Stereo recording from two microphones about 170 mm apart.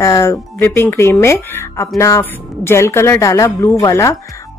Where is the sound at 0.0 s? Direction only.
20° left (ahead or behind).